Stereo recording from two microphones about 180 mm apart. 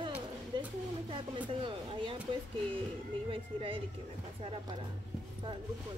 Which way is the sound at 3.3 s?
30° right (ahead or behind).